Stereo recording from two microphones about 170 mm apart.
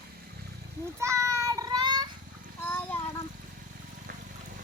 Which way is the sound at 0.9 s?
15° right (ahead or behind).